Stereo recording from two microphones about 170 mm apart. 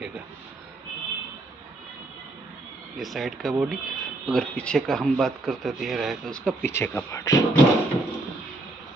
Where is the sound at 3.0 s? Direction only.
Centre (ahead or behind); by 7.4 s 20° left (ahead or behind).